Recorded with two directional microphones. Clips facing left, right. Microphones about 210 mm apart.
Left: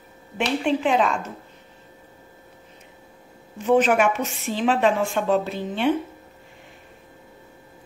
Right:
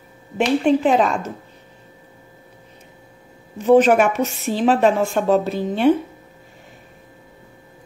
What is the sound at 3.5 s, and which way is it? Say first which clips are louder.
A woman's voice: right 5 dB; 40° right (ahead or behind).